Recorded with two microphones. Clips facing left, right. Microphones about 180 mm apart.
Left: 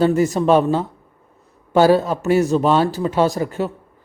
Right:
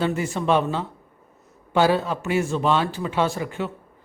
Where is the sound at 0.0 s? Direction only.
40° left (ahead or behind).